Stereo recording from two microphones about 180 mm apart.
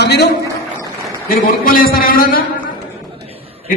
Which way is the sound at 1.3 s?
55° left (ahead or behind).